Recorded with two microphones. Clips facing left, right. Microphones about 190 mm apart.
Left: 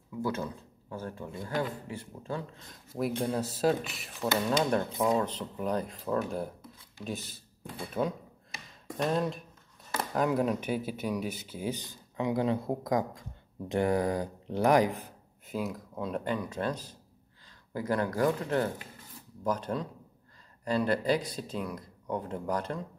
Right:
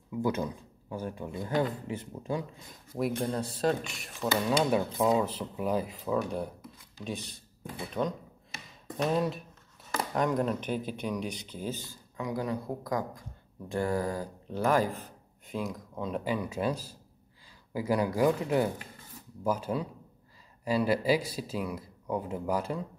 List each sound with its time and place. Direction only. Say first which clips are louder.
0.2 s speech: right 3 dB; 15° right (ahead or behind)
2.9 s speech: even; centre (ahead or behind)
15.4 s speech: left 1 dB; 5° left (ahead or behind)